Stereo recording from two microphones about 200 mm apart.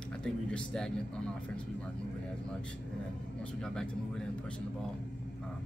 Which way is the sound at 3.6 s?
5° left (ahead or behind).